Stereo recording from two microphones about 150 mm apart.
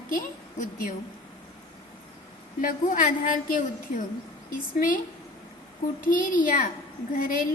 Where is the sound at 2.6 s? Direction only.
65° left (ahead or behind).